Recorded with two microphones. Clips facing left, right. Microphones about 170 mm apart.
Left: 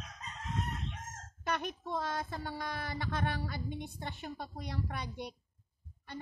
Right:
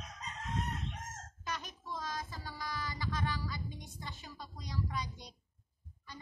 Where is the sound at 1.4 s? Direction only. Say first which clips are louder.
Left 7 dB; 60° left (ahead or behind).